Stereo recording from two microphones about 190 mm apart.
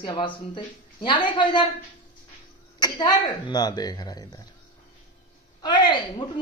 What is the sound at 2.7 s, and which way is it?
A woman's voice, 20° left (ahead or behind).